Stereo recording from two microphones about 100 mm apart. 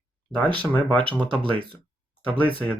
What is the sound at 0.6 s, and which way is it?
Speech, 15° left (ahead or behind).